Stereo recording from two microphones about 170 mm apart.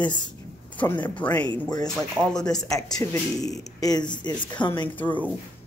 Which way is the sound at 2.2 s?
15° right (ahead or behind).